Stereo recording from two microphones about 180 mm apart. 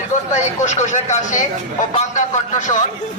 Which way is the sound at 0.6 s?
40° left (ahead or behind).